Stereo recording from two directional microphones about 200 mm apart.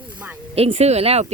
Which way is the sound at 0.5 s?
30° right (ahead or behind).